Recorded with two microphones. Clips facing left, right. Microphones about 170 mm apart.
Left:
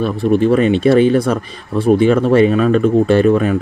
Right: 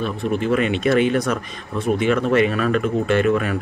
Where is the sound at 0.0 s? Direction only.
35° left (ahead or behind).